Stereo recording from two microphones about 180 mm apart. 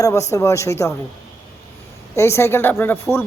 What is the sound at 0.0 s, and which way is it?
Speech, 15° left (ahead or behind).